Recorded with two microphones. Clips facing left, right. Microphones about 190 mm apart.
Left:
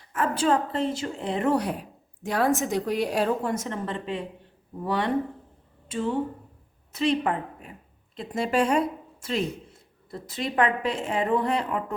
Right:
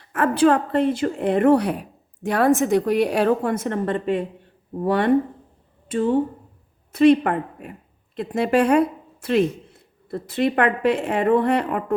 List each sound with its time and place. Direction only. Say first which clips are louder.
0.1 s speech: right 6 dB; 65° right (ahead or behind)